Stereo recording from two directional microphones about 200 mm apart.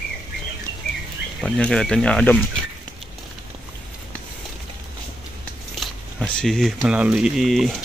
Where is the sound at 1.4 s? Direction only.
5° left (ahead or behind).